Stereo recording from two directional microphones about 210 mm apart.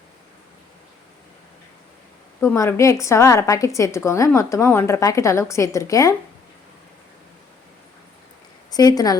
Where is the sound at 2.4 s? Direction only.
10° left (ahead or behind).